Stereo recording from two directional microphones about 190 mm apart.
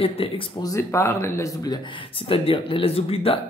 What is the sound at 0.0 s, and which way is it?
Speech, 30° left (ahead or behind).